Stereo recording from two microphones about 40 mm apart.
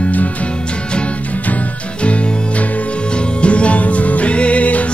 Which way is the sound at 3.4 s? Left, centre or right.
Left.